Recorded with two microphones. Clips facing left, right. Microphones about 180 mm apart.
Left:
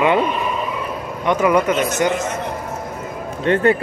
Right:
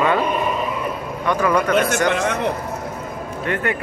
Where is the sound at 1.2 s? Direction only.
20° left (ahead or behind).